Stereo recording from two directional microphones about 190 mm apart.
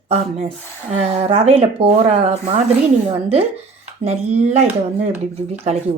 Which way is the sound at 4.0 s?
35° right (ahead or behind).